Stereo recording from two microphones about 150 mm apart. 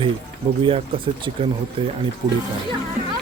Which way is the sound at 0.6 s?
35° right (ahead or behind).